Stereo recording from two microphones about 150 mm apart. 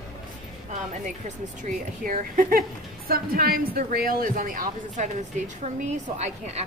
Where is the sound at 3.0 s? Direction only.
85° right; by 5.1 s 60° right (ahead or behind).